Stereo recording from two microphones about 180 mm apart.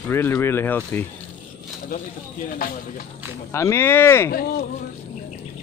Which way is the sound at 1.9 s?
55° left (ahead or behind).